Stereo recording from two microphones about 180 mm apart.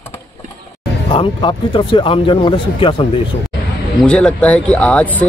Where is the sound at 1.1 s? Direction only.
30° left (ahead or behind).